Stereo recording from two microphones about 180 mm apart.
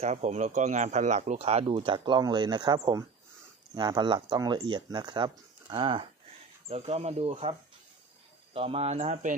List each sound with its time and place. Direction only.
0.0 s speech: 40° right (ahead or behind)
8.5 s speech: 30° right (ahead or behind)